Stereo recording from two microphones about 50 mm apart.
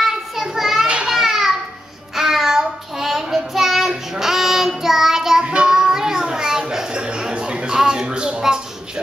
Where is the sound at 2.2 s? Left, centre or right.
Centre.